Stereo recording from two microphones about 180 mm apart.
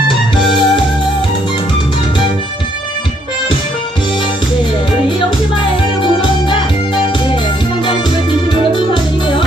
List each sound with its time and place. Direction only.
0.5 s music: 25° left (ahead or behind)
8.7 s music: 25° left (ahead or behind)